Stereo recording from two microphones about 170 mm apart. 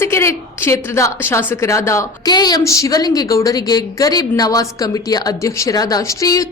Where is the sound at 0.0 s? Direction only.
15° left (ahead or behind).